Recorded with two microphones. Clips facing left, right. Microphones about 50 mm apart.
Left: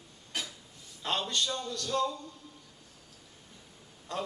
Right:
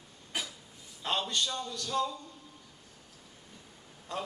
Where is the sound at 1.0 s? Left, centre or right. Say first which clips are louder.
Even; centre.